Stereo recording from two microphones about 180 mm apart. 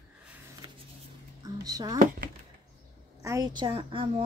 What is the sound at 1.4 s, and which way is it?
Speech, 20° right (ahead or behind).